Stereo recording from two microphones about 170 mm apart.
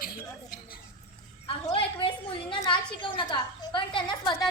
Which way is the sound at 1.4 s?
30° left (ahead or behind).